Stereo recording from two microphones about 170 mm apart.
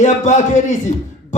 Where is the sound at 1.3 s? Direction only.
45° left (ahead or behind).